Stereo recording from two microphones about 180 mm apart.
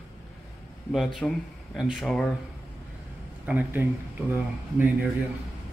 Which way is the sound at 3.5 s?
10° right (ahead or behind).